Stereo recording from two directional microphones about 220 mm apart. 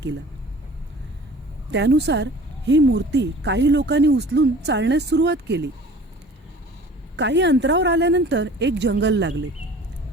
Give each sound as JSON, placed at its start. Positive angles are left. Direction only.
{"t": 1.7, "sound": "speech", "side_deg": -50}
{"t": 7.2, "sound": "speech", "side_deg": -55}